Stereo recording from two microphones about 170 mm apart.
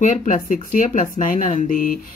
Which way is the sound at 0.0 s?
50° left (ahead or behind).